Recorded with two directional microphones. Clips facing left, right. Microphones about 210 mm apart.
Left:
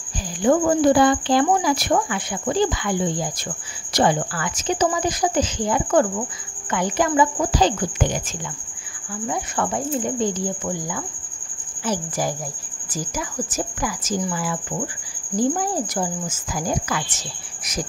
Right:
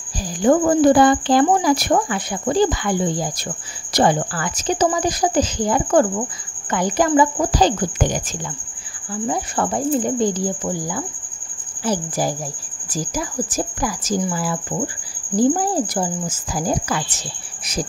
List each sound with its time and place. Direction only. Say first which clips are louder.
0.4 s speech: right 3 dB; 45° right (ahead or behind)